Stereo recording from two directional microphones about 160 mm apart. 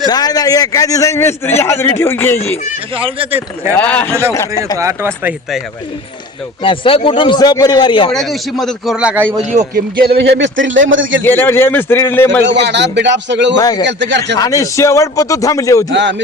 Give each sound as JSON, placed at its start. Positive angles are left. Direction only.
{"t": 0.1, "sound": "a man's voice", "side_deg": 25}
{"t": 3.0, "sound": "speech", "side_deg": -35}
{"t": 3.8, "sound": "a man's voice", "side_deg": 10}
{"t": 4.3, "sound": "a man's voice", "side_deg": 20}
{"t": 4.8, "sound": "speech", "side_deg": -15}
{"t": 6.6, "sound": "speech", "side_deg": 35}
{"t": 8.1, "sound": "speech", "side_deg": 0}
{"t": 9.7, "sound": "speech", "side_deg": -75}
{"t": 11.2, "sound": "a man's voice", "side_deg": 15}
{"t": 12.5, "sound": "speech", "side_deg": -90}
{"t": 13.6, "sound": "a man's voice", "side_deg": 25}
{"t": 13.8, "sound": "speech", "side_deg": -90}
{"t": 14.3, "sound": "a man's voice", "side_deg": 20}
{"t": 15.9, "sound": "speech", "side_deg": -90}